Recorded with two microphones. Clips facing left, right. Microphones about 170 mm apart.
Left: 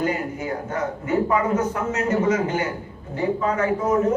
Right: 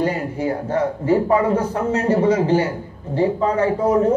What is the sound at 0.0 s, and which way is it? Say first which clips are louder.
A man's voice: right 4 dB; 30° right (ahead or behind).